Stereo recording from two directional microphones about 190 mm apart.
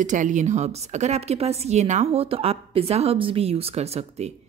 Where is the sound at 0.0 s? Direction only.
40° right (ahead or behind).